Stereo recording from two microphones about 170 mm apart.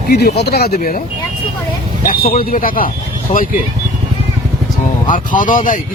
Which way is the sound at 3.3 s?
40° left (ahead or behind).